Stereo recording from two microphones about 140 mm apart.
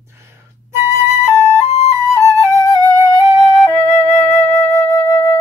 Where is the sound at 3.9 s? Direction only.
20° left (ahead or behind).